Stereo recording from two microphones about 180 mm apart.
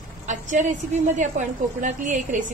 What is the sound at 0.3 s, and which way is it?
A woman's voice, 45° right (ahead or behind).